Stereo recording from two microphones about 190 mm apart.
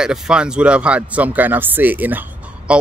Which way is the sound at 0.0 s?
5° right (ahead or behind).